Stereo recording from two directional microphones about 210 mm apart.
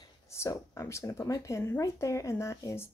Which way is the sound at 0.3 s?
15° left (ahead or behind).